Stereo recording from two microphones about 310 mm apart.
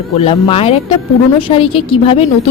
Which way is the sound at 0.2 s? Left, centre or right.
Centre.